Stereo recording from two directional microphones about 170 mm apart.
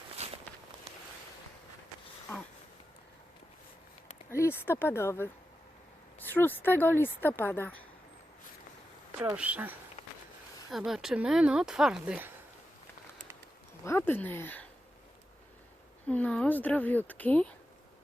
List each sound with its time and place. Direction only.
0.2 s walk: 40° right (ahead or behind)
4.3 s speech: 15° left (ahead or behind)
9.3 s speech: 10° right (ahead or behind)
13.8 s speech: 15° left (ahead or behind)
16.0 s speech: 5° left (ahead or behind)